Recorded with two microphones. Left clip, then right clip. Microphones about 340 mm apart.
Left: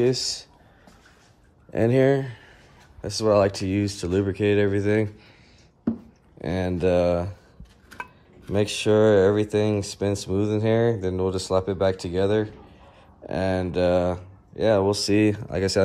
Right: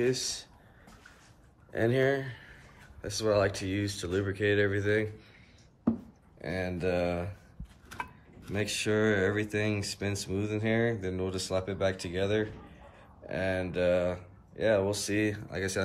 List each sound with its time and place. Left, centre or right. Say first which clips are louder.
0.0 s speech: left 7 dB; centre
1.7 s speech: left 7 dB; centre
6.4 s speech: left 8 dB; centre
8.5 s speech: left 9 dB; centre